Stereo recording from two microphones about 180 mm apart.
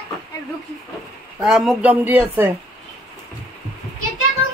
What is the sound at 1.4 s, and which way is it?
Speech, centre (ahead or behind).